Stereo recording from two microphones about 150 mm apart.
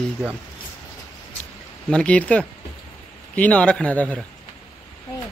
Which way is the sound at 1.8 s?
5° left (ahead or behind).